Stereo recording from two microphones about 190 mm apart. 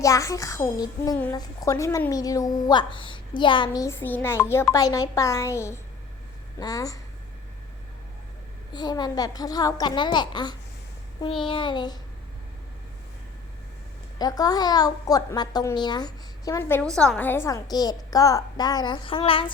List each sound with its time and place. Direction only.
0.0 s a woman's voice: 15° left (ahead or behind)
8.7 s a woman's voice: 20° left (ahead or behind)
14.2 s a woman's voice: 20° left (ahead or behind)